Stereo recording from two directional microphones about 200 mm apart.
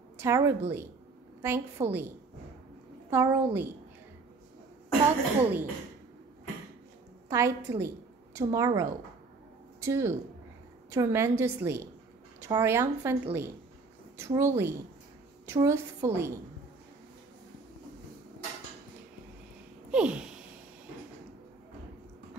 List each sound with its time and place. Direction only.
0.2 s a woman's voice: 15° right (ahead or behind)
3.1 s a woman's voice: 10° right (ahead or behind)
5.4 s a woman's voice: 10° right (ahead or behind)
7.2 s a woman's voice: 15° right (ahead or behind)
19.9 s a sound: 5° right (ahead or behind)